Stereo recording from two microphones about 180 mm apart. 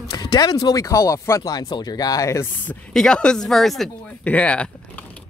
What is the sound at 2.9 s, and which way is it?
Speech, 5° left (ahead or behind).